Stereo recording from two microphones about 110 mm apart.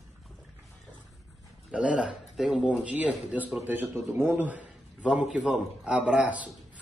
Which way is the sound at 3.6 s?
15° right (ahead or behind).